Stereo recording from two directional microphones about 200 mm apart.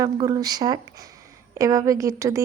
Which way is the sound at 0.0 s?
20° right (ahead or behind).